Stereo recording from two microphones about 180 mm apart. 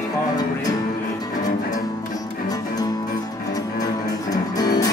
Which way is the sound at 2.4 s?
20° left (ahead or behind).